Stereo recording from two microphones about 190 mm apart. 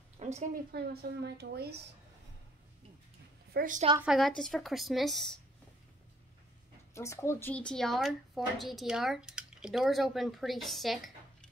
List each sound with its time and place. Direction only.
0.2 s a sound: 35° right (ahead or behind)
0.7 s a woman's voice: 55° right (ahead or behind)
3.5 s a woman's voice: 45° right (ahead or behind)
4.0 s speech: centre (ahead or behind)
6.9 s speech: 15° left (ahead or behind)